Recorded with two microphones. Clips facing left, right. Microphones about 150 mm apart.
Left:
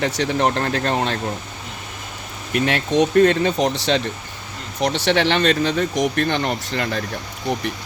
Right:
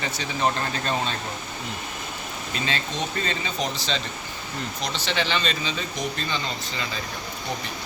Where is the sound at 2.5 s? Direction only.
65° left (ahead or behind).